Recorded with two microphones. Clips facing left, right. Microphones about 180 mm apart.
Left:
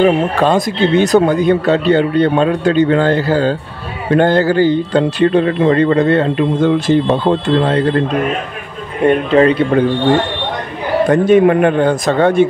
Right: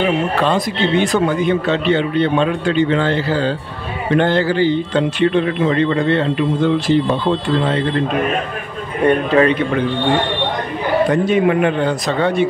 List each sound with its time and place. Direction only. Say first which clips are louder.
0.0 s speech: left 5 dB; 45° left (ahead or behind)
9.0 s speech: left 3 dB; 30° left (ahead or behind)
11.1 s speech: left 8 dB; 50° left (ahead or behind)